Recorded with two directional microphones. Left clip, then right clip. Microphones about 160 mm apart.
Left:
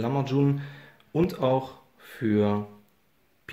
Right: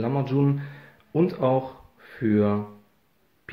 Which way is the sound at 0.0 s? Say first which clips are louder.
Right 1 dB; 10° left (ahead or behind).